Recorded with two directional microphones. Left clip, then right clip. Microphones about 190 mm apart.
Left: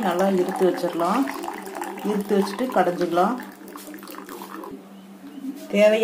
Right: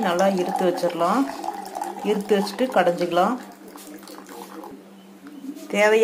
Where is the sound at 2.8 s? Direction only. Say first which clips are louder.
Right 1 dB; 20° right (ahead or behind).